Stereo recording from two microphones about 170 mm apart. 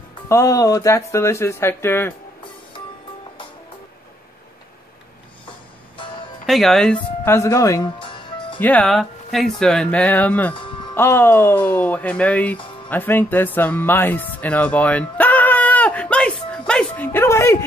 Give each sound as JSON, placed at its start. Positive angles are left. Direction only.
{"t": 0.3, "sound": "speech", "side_deg": 20}
{"t": 5.5, "sound": "music", "side_deg": 30}
{"t": 6.4, "sound": "speech", "side_deg": 0}
{"t": 8.5, "sound": "speech", "side_deg": 10}
{"t": 12.9, "sound": "music", "side_deg": 10}